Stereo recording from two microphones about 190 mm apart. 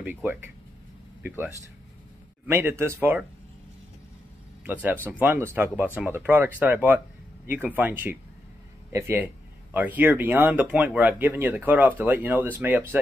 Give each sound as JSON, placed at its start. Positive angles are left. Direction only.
{"t": 0.0, "sound": "speech", "side_deg": -10}
{"t": 4.6, "sound": "speech", "side_deg": -10}